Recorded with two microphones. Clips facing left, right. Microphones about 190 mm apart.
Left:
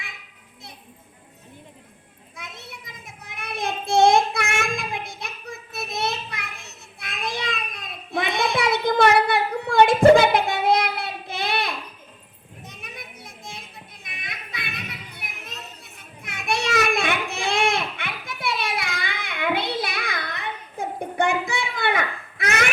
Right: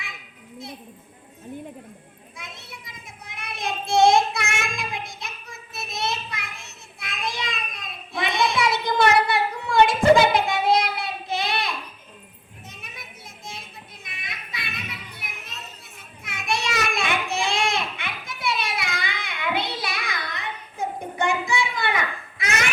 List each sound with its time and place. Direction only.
3.3 s child singing: 55° left (ahead or behind)
14.5 s children playing: 55° left (ahead or behind)
16.2 s a sound: 55° left (ahead or behind)